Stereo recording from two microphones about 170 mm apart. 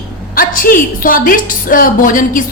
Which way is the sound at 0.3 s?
55° left (ahead or behind).